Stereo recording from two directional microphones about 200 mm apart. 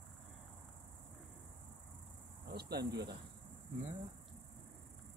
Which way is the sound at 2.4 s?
55° right (ahead or behind).